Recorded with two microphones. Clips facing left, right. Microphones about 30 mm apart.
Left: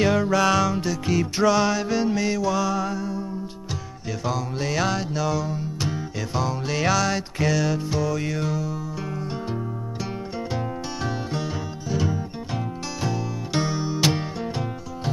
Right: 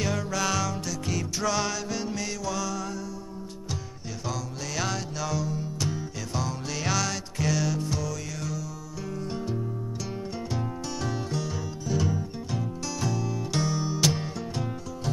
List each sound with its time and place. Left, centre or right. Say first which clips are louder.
0.0 s music: left 9 dB; left
4.3 s music: left 7 dB; left
11.1 s music: left 3 dB; left